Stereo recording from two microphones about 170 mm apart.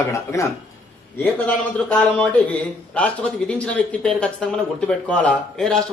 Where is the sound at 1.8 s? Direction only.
5° left (ahead or behind).